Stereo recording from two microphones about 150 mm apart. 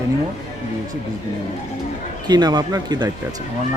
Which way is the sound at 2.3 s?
25° right (ahead or behind).